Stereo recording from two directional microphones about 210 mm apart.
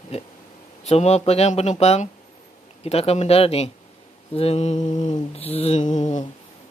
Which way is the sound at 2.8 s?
30° left (ahead or behind).